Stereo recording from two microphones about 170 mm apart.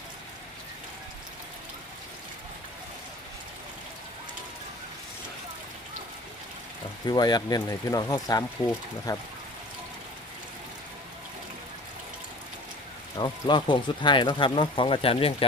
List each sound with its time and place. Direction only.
7.1 s speech: 25° left (ahead or behind)
13.1 s speech: 25° left (ahead or behind)